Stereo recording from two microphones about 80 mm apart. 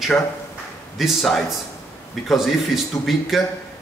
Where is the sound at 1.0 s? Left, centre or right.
Centre.